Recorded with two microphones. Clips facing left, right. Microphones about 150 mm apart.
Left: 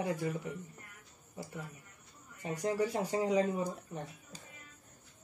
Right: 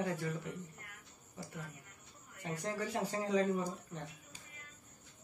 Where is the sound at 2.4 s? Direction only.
15° left (ahead or behind).